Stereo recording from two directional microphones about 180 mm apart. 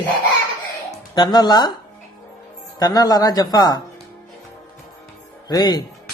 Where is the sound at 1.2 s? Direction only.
25° left (ahead or behind).